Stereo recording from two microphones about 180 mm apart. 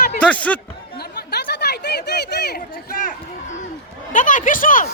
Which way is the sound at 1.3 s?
65° left (ahead or behind).